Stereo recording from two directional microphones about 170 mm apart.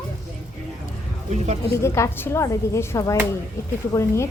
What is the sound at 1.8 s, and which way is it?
A woman's voice, 15° left (ahead or behind).